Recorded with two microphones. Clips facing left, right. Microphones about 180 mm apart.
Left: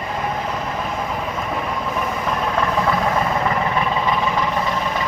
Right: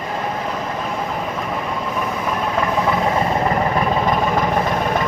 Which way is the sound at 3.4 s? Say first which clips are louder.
Right 2 dB; 45° right (ahead or behind).